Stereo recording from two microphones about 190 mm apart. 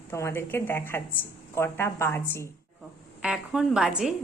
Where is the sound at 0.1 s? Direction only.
15° left (ahead or behind).